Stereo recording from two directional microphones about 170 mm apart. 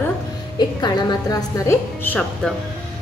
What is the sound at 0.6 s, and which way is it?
A woman's voice, 25° left (ahead or behind).